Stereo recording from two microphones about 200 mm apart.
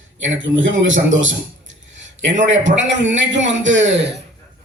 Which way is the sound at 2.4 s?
65° right (ahead or behind).